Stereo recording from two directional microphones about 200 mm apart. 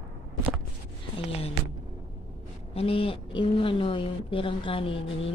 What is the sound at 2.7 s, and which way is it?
A woman's voice, 30° left (ahead or behind).